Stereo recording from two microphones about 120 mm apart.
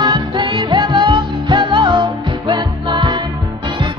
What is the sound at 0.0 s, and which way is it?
Music, 40° right (ahead or behind).